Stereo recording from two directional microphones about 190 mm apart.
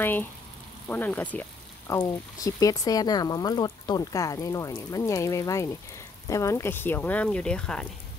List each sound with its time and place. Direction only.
0.0 s speech: 10° left (ahead or behind)